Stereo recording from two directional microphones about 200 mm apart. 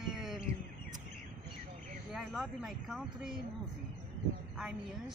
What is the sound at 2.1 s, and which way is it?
Speech, centre (ahead or behind).